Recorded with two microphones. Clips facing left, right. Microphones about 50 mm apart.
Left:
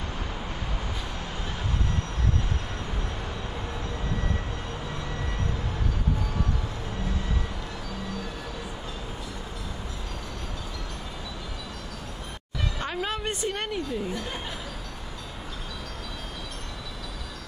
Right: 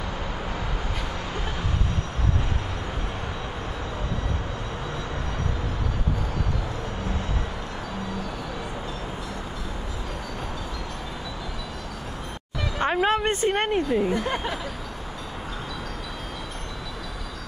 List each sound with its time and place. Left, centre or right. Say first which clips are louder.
12.7 s speech: right 10 dB; right